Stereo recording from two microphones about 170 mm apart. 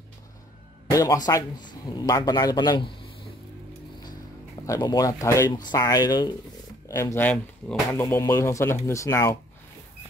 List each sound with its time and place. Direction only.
0.8 s speech: 20° left (ahead or behind)
4.6 s speech: 20° left (ahead or behind)